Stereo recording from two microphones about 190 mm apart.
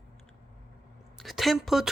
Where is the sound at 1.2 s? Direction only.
Centre (ahead or behind).